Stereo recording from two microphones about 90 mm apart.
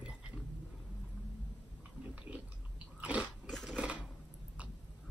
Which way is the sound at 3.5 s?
5° left (ahead or behind).